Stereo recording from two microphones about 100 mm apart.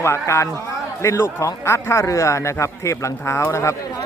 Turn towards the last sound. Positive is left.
turn(degrees=30)  # may be behind; listen again after turning